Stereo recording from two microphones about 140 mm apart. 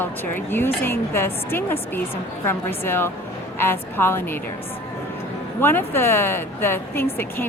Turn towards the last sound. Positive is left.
turn(degrees=15)  # may be behind; listen again after turning